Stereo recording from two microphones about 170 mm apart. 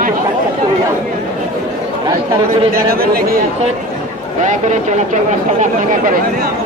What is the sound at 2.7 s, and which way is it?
Speech, 60° right (ahead or behind).